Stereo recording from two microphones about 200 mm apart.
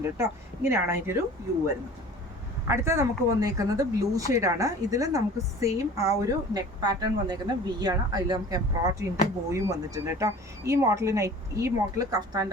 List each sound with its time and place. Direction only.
0.2 s speech: 10° right (ahead or behind)
2.6 s speech: 15° right (ahead or behind)